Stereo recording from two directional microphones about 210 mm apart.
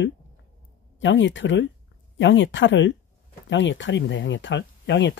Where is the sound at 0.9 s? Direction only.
60° left (ahead or behind).